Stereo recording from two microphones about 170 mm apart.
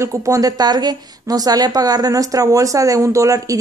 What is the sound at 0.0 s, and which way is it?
Speech, 20° right (ahead or behind).